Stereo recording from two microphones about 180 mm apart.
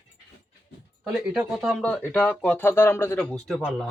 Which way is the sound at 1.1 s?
5° right (ahead or behind).